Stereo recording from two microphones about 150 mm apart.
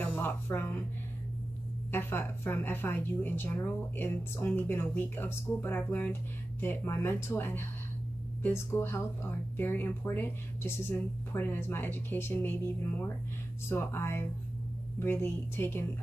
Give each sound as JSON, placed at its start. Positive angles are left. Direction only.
{"t": 0.0, "sound": "music", "side_deg": 15}
{"t": 1.9, "sound": "a woman's voice", "side_deg": 15}